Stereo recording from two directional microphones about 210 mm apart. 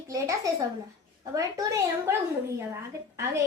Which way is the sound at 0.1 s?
15° right (ahead or behind).